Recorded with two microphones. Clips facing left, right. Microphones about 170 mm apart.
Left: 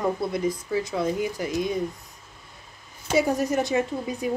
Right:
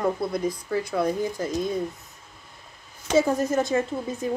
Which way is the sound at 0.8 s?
20° left (ahead or behind).